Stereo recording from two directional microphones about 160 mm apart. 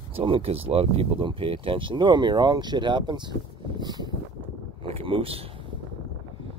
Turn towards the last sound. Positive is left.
turn(degrees=-35)  # may be behind; listen again after turning